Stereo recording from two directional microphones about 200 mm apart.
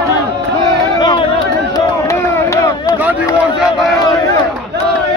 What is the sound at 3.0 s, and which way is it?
Run, 10° right (ahead or behind).